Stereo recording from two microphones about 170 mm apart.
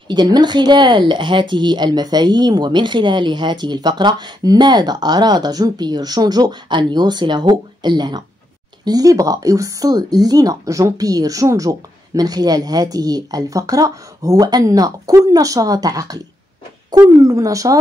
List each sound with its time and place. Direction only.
0.1 s speech: 25° right (ahead or behind)